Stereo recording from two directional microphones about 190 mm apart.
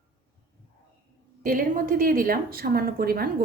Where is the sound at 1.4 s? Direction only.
45° right (ahead or behind).